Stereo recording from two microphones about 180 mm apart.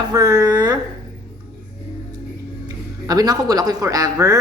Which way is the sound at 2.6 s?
20° right (ahead or behind).